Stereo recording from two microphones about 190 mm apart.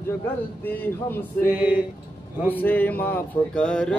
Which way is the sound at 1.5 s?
10° right (ahead or behind).